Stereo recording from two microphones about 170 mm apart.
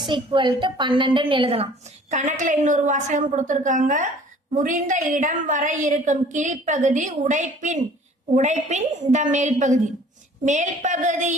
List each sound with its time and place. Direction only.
0.0 s a woman's voice: 30° right (ahead or behind); by 11.3 s 45° right (ahead or behind)